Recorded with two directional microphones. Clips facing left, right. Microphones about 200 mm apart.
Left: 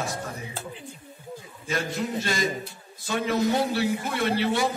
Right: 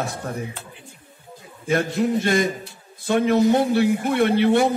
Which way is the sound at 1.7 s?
55° right (ahead or behind).